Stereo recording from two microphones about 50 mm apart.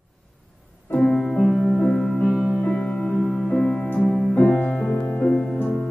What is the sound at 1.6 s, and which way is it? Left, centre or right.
Music, left.